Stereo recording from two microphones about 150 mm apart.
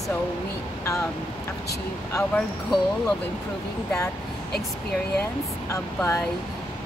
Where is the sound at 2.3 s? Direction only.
5° left (ahead or behind).